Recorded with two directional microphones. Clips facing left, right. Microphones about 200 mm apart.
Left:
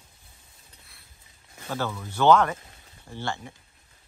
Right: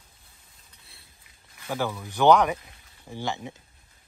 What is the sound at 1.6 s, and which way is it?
Speech, 15° right (ahead or behind).